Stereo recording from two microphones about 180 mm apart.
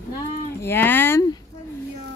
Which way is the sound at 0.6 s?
10° left (ahead or behind).